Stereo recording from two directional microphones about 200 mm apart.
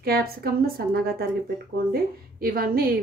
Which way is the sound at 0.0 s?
50° right (ahead or behind).